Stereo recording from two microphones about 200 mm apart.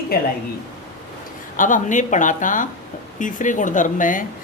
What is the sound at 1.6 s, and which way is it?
Speech, 40° left (ahead or behind).